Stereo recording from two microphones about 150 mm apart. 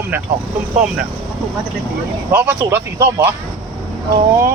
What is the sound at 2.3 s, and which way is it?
Speech, 15° right (ahead or behind).